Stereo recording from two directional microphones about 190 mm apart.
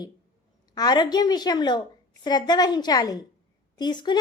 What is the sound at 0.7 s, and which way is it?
A woman's voice, 20° left (ahead or behind).